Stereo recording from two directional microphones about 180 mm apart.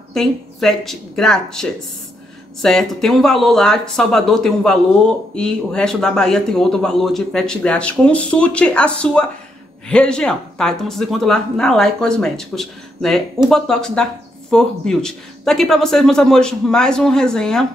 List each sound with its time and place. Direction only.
0.1 s speech: centre (ahead or behind)